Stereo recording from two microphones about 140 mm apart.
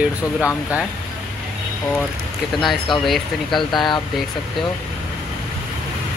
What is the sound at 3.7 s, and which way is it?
Speech, 30° left (ahead or behind).